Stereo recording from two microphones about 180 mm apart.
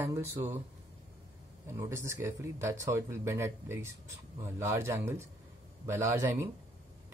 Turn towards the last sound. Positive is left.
turn(degrees=-15)  # may be behind; listen again after turning